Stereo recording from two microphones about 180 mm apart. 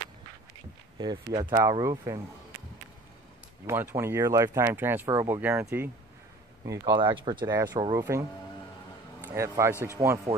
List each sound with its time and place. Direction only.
0.9 s speech: 25° right (ahead or behind)
3.6 s speech: 15° right (ahead or behind)
6.8 s speech: 25° right (ahead or behind)